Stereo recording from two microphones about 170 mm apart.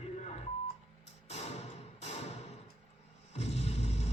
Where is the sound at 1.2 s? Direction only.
40° left (ahead or behind).